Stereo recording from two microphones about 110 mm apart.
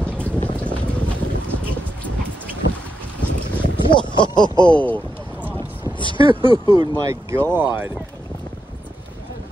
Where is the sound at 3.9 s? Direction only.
45° left (ahead or behind).